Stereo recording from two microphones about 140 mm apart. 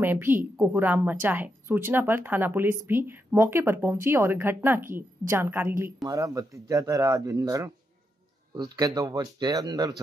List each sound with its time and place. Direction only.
0.0 s speech: 15° right (ahead or behind)